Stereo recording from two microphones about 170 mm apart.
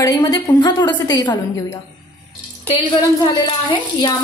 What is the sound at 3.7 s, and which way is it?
Speech, 25° left (ahead or behind).